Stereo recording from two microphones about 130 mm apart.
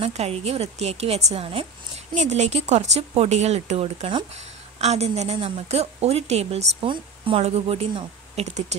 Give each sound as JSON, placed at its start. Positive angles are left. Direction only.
{"t": 0.0, "sound": "a woman's voice", "side_deg": -55}
{"t": 2.1, "sound": "a woman's voice", "side_deg": -60}
{"t": 8.5, "sound": "speech", "side_deg": -60}